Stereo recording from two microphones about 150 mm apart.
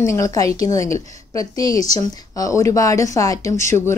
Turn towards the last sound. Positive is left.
turn(degrees=20)  # may be behind; listen again after turning